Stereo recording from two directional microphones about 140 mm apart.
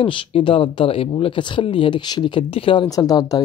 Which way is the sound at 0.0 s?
40° left (ahead or behind).